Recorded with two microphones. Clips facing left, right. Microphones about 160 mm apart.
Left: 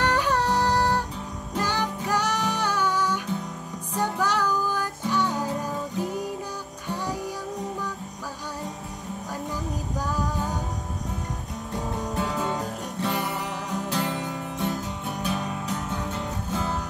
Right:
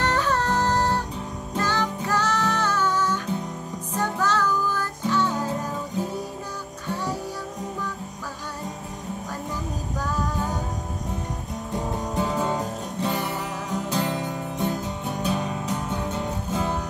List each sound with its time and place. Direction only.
0.0 s music: 10° left (ahead or behind)
12.2 s music: 20° right (ahead or behind)
15.9 s music: 15° right (ahead or behind)